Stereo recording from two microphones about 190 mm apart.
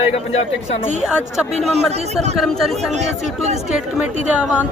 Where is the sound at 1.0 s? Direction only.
5° right (ahead or behind).